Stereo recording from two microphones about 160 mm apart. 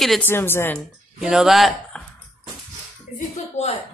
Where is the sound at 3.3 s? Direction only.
40° left (ahead or behind).